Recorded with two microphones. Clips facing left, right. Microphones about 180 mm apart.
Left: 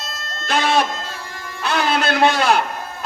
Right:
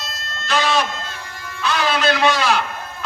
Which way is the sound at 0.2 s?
55° left (ahead or behind).